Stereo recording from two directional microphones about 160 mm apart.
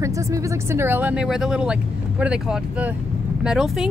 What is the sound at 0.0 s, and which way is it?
Speech, 15° right (ahead or behind).